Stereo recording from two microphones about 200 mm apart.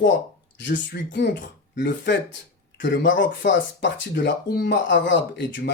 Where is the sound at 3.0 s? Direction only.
70° left (ahead or behind).